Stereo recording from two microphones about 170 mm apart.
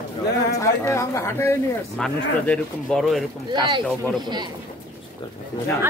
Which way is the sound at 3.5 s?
25° right (ahead or behind).